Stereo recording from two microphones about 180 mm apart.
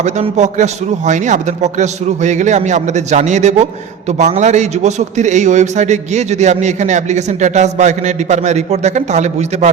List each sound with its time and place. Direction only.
0.0 s a man's voice: 40° right (ahead or behind)